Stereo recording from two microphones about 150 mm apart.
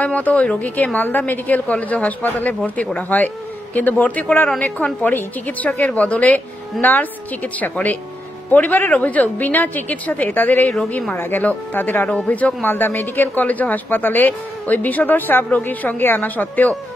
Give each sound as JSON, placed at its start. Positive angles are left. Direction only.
{"t": 0.0, "sound": "speech", "side_deg": 10}